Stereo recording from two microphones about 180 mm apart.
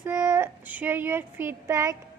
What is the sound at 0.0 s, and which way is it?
Speech, 15° right (ahead or behind).